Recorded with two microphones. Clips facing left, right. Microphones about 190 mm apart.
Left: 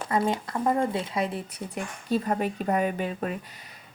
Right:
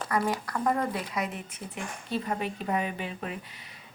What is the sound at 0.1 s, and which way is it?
Speech, 25° left (ahead or behind).